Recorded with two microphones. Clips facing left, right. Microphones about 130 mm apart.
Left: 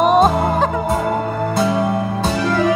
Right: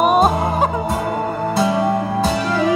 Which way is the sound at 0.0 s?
10° right (ahead or behind).